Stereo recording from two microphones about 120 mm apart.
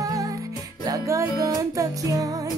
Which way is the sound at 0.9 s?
25° right (ahead or behind).